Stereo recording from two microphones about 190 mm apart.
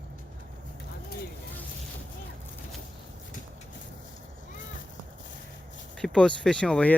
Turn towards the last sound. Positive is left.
turn(degrees=5)  # may be behind; listen again after turning